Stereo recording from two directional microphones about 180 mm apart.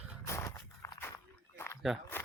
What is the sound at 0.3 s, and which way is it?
Walk, 15° left (ahead or behind).